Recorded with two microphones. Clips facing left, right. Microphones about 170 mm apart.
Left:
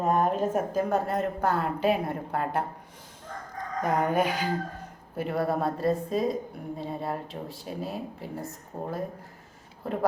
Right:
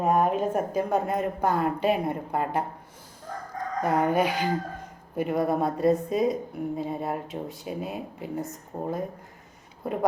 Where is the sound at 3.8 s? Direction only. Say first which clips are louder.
Right 2 dB; 5° right (ahead or behind).